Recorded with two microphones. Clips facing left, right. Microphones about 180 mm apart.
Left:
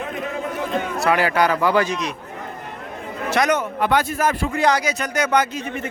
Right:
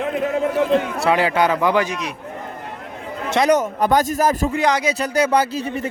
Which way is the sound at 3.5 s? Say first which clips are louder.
Right 3 dB; 40° right (ahead or behind).